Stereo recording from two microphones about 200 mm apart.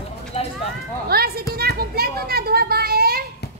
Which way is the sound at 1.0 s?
50° right (ahead or behind).